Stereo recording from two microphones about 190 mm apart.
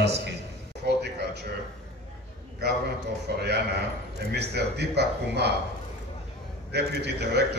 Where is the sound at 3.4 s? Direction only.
60° right (ahead or behind).